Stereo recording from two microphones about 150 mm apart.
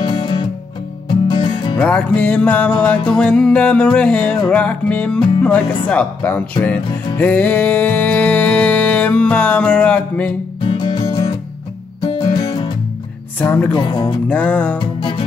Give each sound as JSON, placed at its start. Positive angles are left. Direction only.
{"t": 0.0, "sound": "music", "side_deg": 30}
{"t": 1.8, "sound": "music", "side_deg": 5}
{"t": 10.6, "sound": "music", "side_deg": 30}
{"t": 13.4, "sound": "music", "side_deg": 10}
{"t": 13.7, "sound": "speech", "side_deg": 30}
{"t": 14.3, "sound": "music", "side_deg": 10}
{"t": 14.8, "sound": "music", "side_deg": 35}